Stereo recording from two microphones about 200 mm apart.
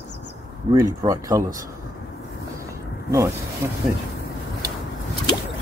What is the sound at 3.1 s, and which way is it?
Speech, 15° right (ahead or behind).